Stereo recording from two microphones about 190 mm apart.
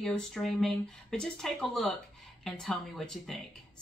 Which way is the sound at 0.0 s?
Centre (ahead or behind).